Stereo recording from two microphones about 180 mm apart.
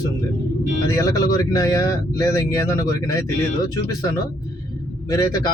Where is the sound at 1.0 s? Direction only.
20° left (ahead or behind).